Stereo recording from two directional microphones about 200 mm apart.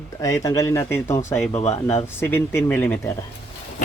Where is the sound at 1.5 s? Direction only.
30° left (ahead or behind).